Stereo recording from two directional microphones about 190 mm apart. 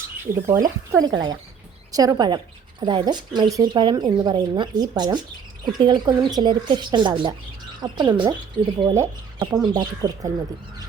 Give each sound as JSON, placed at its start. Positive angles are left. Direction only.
{"t": 0.9, "sound": "speech", "side_deg": -20}